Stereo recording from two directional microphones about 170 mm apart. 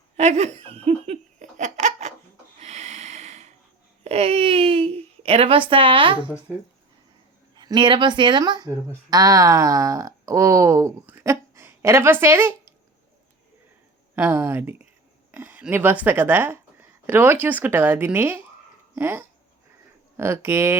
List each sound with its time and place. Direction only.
0.2 s laughter: 40° right (ahead or behind)
2.6 s snort: 40° right (ahead or behind)
4.0 s a child's voice: 35° right (ahead or behind)
7.5 s speech: 25° right (ahead or behind)
14.2 s speech: 15° right (ahead or behind)